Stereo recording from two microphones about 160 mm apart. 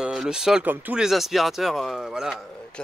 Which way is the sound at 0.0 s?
5° right (ahead or behind).